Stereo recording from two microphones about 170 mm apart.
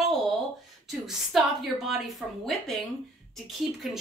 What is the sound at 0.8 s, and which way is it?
Speech, centre (ahead or behind).